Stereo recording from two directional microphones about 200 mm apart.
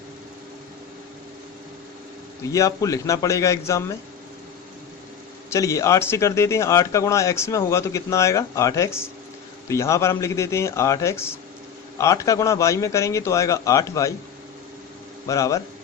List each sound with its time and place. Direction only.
2.4 s a man's voice: 15° left (ahead or behind)
5.5 s a man's voice: 15° left (ahead or behind)
15.3 s a man's voice: 15° left (ahead or behind)